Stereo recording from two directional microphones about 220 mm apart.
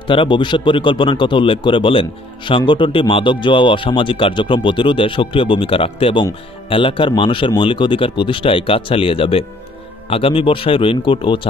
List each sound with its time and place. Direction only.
0.0 s speech: 20° left (ahead or behind)